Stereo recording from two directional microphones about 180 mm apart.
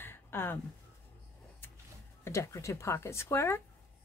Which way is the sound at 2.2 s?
15° left (ahead or behind).